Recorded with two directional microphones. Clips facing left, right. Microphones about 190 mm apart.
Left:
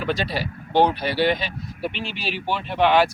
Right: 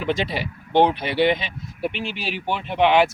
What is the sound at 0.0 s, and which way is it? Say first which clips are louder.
Speech: right 1 dB; 20° right (ahead or behind).